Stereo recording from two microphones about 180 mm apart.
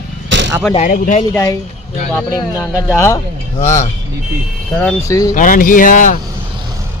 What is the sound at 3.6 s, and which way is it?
Speech, 40° left (ahead or behind).